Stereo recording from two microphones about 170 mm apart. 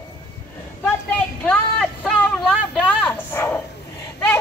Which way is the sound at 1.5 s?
5° left (ahead or behind).